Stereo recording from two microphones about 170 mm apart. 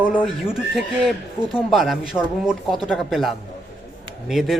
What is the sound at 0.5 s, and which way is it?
Speech, 5° right (ahead or behind).